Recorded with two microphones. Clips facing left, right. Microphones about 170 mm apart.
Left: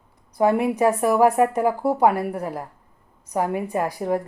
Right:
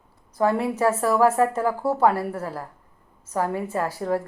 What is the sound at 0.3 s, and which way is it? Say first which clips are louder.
Speech: left 3 dB; 15° left (ahead or behind).